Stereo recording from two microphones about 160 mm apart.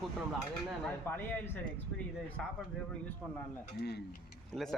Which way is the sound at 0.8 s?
15° left (ahead or behind).